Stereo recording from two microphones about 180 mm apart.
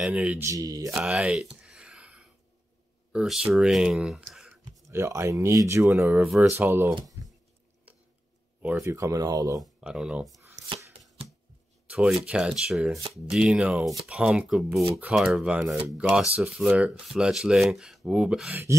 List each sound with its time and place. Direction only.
0.0 s speech: 5° right (ahead or behind)
0.4 s speech: 20° right (ahead or behind)
0.9 s a sound: 5° right (ahead or behind)
3.1 s speech: 5° right (ahead or behind)
4.9 s speech: 15° right (ahead or behind)
6.1 s speech: centre (ahead or behind)
7.2 s a sound: 15° right (ahead or behind)
8.8 s speech: 15° right (ahead or behind)
9.6 s speech: 5° right (ahead or behind)
11.9 s speech: 5° right (ahead or behind)